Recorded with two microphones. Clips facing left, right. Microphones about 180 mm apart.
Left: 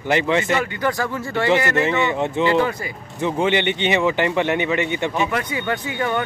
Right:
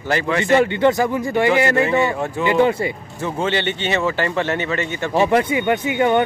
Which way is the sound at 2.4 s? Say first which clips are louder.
Right 6 dB; 20° right (ahead or behind).